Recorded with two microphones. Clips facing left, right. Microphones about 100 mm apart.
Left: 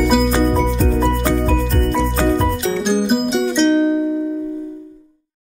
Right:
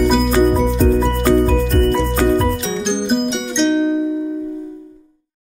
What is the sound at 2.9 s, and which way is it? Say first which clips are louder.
Music: left 1 dB; 5° left (ahead or behind).